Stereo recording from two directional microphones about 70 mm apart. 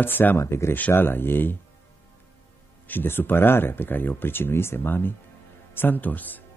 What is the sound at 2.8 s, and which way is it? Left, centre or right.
Speech, left.